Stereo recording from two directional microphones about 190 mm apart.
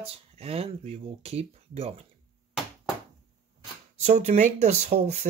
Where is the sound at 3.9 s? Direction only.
35° right (ahead or behind).